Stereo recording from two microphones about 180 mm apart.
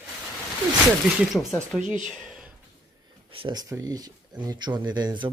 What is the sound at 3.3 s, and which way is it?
Speech, 25° right (ahead or behind).